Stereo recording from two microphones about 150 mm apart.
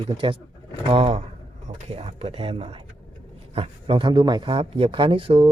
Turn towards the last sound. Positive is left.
turn(degrees=-35)  # may be behind; listen again after turning